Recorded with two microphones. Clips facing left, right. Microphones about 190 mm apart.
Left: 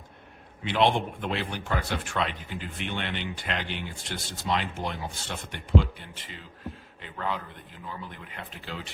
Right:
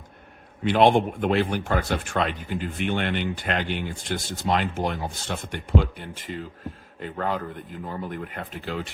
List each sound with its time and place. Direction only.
0.6 s speech: 50° right (ahead or behind)